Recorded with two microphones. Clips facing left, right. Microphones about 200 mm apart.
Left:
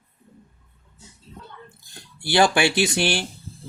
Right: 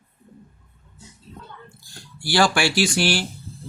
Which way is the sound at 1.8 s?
20° left (ahead or behind).